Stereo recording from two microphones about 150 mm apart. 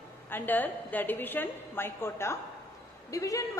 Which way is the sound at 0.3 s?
10° left (ahead or behind).